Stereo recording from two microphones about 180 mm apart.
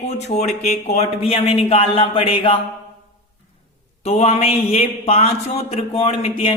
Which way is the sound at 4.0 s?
35° left (ahead or behind).